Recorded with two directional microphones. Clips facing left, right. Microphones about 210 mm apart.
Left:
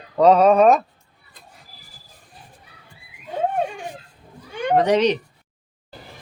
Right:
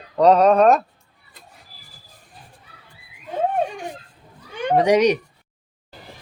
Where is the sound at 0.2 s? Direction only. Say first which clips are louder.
Even; centre (ahead or behind).